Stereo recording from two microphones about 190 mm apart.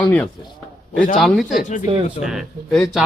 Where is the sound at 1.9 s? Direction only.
30° right (ahead or behind).